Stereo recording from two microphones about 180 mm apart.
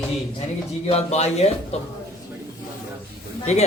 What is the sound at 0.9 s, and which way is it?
A man's voice, 35° left (ahead or behind).